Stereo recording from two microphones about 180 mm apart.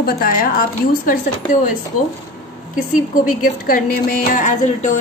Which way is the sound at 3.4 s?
50° left (ahead or behind).